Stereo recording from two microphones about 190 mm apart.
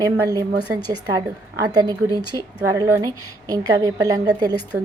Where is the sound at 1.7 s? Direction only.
20° right (ahead or behind).